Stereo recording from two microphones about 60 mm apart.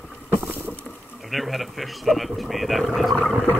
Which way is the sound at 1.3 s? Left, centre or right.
Centre.